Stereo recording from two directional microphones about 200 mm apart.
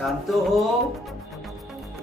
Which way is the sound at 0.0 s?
Centre (ahead or behind).